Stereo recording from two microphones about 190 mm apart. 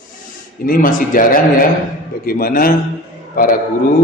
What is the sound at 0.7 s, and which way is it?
A man's voice, 45° left (ahead or behind).